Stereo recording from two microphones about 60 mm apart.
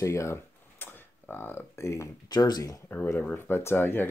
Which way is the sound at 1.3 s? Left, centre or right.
Left.